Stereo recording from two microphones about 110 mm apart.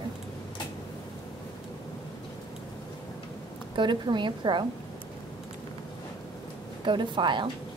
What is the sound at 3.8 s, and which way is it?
Speech, 45° right (ahead or behind).